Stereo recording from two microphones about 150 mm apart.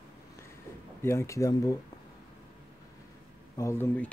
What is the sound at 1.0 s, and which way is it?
Speech, 20° left (ahead or behind).